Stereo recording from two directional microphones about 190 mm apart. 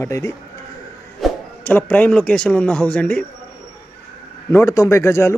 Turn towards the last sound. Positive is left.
turn(degrees=15)  # may be behind; listen again after turning